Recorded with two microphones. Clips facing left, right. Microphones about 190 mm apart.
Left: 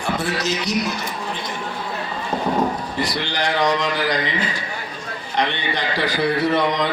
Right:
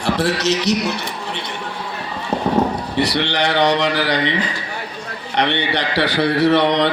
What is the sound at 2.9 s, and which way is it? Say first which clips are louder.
A man's voice: right 5 dB; 70° right (ahead or behind).